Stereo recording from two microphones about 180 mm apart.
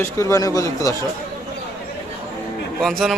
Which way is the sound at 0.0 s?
15° left (ahead or behind).